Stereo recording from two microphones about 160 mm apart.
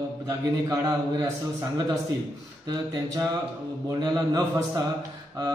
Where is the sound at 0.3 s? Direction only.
20° right (ahead or behind).